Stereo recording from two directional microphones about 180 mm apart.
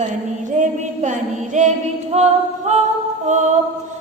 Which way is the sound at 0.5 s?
40° right (ahead or behind).